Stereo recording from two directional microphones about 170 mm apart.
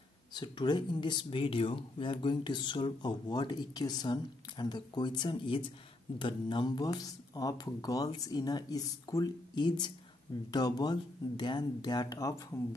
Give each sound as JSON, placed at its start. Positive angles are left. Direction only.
{"t": 0.3, "sound": "speech", "side_deg": 25}